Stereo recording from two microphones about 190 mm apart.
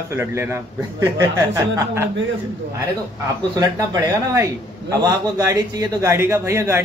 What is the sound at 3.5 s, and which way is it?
A man's voice, 20° right (ahead or behind).